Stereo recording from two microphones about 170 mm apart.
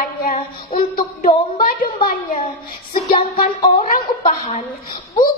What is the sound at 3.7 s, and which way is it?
Speech, 35° left (ahead or behind).